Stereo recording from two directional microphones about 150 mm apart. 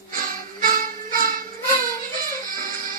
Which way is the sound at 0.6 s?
70° right (ahead or behind).